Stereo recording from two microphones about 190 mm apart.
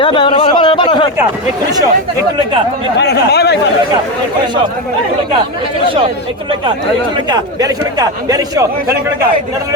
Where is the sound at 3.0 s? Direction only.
60° left (ahead or behind).